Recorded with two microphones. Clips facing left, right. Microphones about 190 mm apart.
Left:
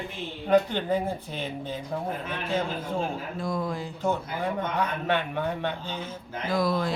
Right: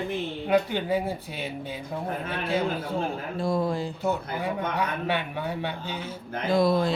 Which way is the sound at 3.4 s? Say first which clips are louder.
Right 5 dB; 30° right (ahead or behind).